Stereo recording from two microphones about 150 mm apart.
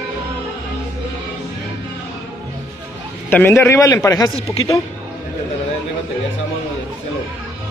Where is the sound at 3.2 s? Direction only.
15° left (ahead or behind).